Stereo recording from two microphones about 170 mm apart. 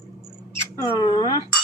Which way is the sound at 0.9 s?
25° left (ahead or behind).